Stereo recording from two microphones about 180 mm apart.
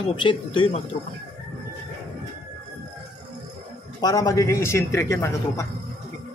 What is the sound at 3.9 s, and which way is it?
A man's voice, 20° left (ahead or behind).